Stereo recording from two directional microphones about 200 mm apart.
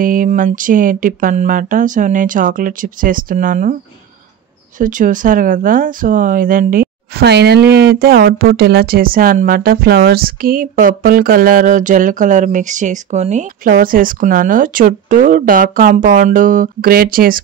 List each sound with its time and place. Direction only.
0.0 s speech: 40° right (ahead or behind)
4.7 s speech: 40° right (ahead or behind)